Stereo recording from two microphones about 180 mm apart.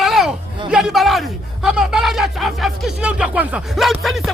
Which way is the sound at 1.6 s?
5° right (ahead or behind).